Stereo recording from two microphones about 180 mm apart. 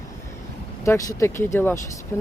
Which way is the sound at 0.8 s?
15° left (ahead or behind).